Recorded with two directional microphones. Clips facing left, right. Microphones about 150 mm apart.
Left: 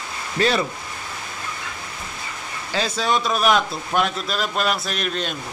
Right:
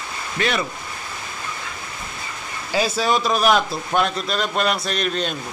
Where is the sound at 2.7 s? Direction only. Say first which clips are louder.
Right 2 dB; 5° right (ahead or behind).